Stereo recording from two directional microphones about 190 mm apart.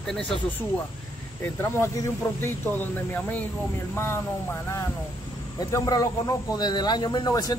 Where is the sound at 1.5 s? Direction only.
15° left (ahead or behind).